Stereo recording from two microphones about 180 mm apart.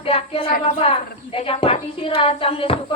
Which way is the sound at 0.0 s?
30° left (ahead or behind).